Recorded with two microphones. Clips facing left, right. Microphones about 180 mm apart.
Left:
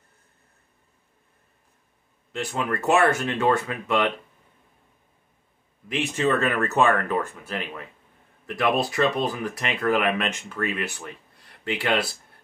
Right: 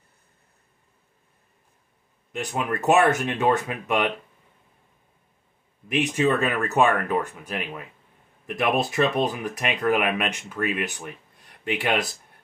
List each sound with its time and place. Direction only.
2.3 s speech: 15° right (ahead or behind)
5.9 s speech: 15° right (ahead or behind)